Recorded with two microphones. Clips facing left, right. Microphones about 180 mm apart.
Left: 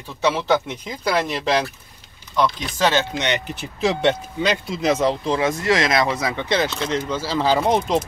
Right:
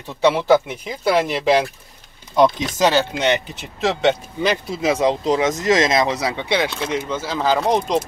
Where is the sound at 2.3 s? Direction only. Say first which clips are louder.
Right 6 dB; 45° right (ahead or behind).